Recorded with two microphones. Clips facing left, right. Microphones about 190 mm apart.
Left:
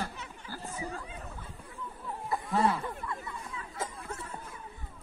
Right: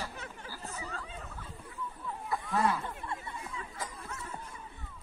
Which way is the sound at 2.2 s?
30° left (ahead or behind).